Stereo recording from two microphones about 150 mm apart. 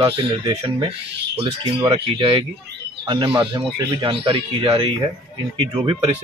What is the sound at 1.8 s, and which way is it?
Speech, 35° right (ahead or behind).